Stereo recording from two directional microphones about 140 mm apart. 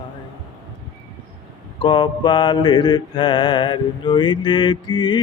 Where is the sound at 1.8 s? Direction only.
35° left (ahead or behind).